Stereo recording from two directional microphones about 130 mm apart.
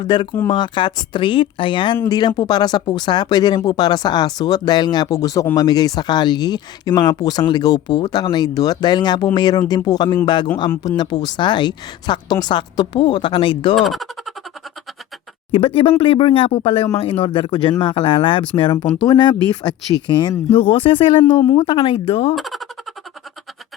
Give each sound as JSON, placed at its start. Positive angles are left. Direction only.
{"t": 0.0, "sound": "speech", "side_deg": 35}
{"t": 13.7, "sound": "speech", "side_deg": 0}
{"t": 15.5, "sound": "speech", "side_deg": 45}
{"t": 22.4, "sound": "speech", "side_deg": 0}